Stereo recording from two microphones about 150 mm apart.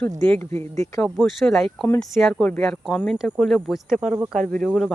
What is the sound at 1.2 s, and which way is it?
Speech, centre (ahead or behind).